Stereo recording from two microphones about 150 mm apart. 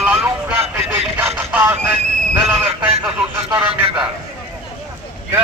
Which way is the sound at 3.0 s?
20° right (ahead or behind).